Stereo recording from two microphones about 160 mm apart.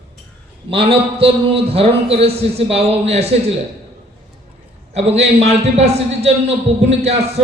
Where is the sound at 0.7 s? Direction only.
35° right (ahead or behind).